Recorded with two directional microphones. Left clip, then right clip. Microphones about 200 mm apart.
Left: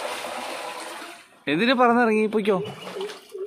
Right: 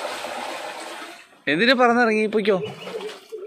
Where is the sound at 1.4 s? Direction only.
5° left (ahead or behind).